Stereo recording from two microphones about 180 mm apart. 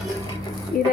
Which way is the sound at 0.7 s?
50° left (ahead or behind).